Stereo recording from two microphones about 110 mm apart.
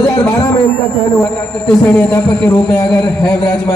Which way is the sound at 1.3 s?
10° left (ahead or behind).